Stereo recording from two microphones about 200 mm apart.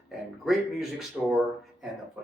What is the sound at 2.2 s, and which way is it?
Speech, 5° right (ahead or behind).